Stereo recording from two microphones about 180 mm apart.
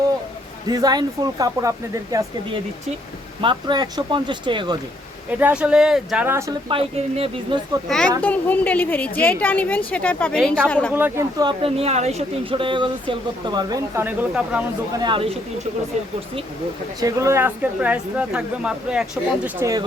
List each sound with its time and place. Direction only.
0.7 s speech: 20° right (ahead or behind)
3.4 s speech: 25° right (ahead or behind)
5.4 s speech: 10° right (ahead or behind)
6.7 s speech: 30° right (ahead or behind)
7.9 s a woman's voice: 5° left (ahead or behind)
10.9 s speech: 15° right (ahead or behind)
11.6 s speech: 35° right (ahead or behind); by 14.6 s 10° right (ahead or behind)
14.9 s speech: 25° right (ahead or behind)
17.0 s speech: 20° right (ahead or behind)